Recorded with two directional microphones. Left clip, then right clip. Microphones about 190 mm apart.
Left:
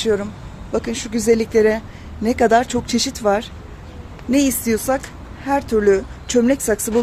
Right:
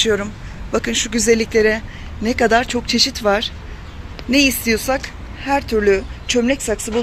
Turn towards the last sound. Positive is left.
turn(degrees=25)  # may be behind; listen again after turning